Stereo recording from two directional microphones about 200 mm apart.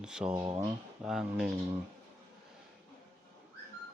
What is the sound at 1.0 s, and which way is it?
Speech, centre (ahead or behind).